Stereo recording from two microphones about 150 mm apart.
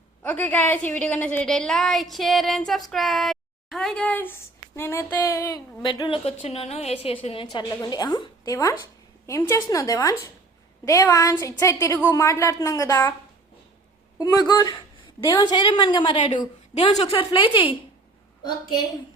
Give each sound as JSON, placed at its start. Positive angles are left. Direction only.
{"t": 0.2, "sound": "a woman's voice", "side_deg": 15}
{"t": 7.5, "sound": "a woman's voice", "side_deg": 25}
{"t": 14.2, "sound": "a woman's voice", "side_deg": 25}